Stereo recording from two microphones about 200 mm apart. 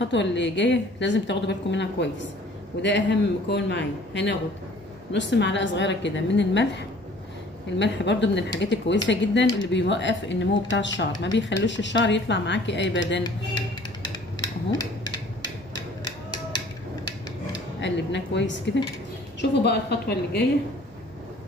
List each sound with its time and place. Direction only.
0.0 s a woman's voice: 65° left (ahead or behind)
7.8 s a woman's voice: 60° left (ahead or behind)
14.4 s a sound: 20° left (ahead or behind)
17.7 s a woman's voice: 60° left (ahead or behind)